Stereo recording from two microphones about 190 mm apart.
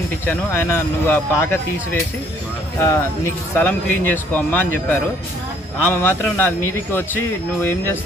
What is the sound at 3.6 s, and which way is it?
Speech, 10° left (ahead or behind).